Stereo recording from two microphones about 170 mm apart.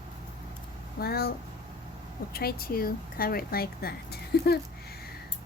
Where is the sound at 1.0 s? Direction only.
65° left (ahead or behind).